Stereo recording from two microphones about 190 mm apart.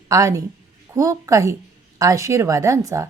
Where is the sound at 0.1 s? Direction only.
15° right (ahead or behind).